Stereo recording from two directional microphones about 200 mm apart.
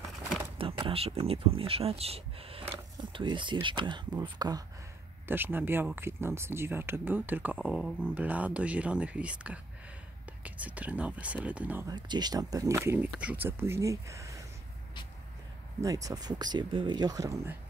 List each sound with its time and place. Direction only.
0.6 s speech: 25° right (ahead or behind); by 11.9 s 10° right (ahead or behind)
11.9 s speech: 20° right (ahead or behind)
15.8 s speech: 15° right (ahead or behind)